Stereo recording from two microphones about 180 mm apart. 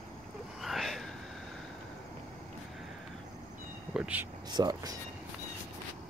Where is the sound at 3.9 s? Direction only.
10° right (ahead or behind).